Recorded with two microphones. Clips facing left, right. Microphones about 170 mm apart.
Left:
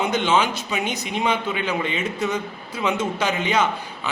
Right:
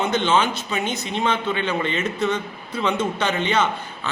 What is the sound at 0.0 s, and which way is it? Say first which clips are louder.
A man's voice: even; 10° left (ahead or behind).